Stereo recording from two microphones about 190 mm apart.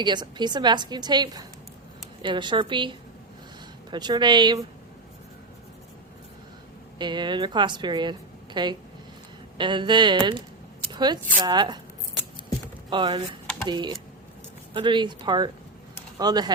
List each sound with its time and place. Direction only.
0.0 s a woman's voice: 25° right (ahead or behind)
3.9 s a woman's voice: 20° right (ahead or behind)
7.0 s a woman's voice: 25° right (ahead or behind)
10.8 s a sound: 25° right (ahead or behind)
11.4 s a woman's voice: 20° right (ahead or behind)
12.9 s a woman's voice: 25° right (ahead or behind)